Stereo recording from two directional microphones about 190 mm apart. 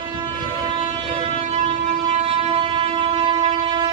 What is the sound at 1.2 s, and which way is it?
Train, 35° right (ahead or behind).